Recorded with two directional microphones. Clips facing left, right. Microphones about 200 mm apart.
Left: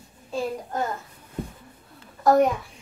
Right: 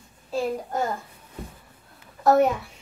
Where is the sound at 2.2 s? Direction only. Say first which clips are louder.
Even; 5° right (ahead or behind).